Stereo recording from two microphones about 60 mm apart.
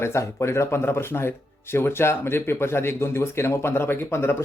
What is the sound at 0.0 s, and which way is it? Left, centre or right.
Speech, left.